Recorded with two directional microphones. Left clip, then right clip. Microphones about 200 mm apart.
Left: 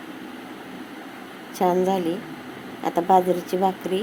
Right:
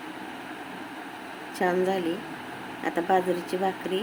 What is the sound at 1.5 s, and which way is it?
Speech, 10° left (ahead or behind).